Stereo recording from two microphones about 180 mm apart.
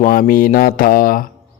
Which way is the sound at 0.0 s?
50° left (ahead or behind).